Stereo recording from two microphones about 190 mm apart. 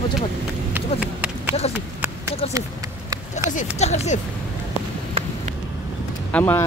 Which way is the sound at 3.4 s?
40° left (ahead or behind).